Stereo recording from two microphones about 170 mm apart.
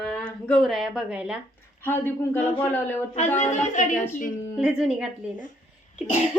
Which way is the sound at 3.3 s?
45° left (ahead or behind).